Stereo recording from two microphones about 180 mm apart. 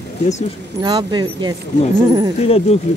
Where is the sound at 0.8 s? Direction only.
25° right (ahead or behind).